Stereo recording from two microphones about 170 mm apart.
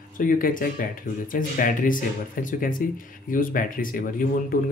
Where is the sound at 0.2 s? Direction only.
50° left (ahead or behind).